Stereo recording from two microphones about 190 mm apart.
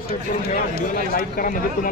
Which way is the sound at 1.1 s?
50° left (ahead or behind).